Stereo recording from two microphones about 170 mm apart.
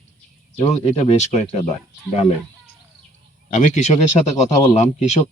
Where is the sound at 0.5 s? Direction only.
40° left (ahead or behind).